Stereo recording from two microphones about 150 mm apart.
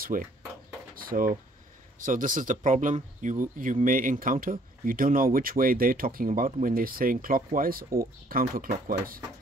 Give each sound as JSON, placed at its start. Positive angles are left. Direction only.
{"t": 0.0, "sound": "speech", "side_deg": -65}
{"t": 0.9, "sound": "drawer open or close", "side_deg": -70}
{"t": 2.0, "sound": "speech", "side_deg": -65}